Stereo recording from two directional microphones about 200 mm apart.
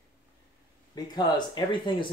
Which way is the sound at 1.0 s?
20° left (ahead or behind).